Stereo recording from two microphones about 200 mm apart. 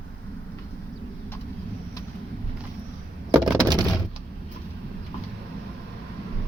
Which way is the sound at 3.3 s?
20° right (ahead or behind).